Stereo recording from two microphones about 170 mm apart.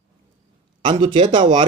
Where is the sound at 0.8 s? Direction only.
25° right (ahead or behind).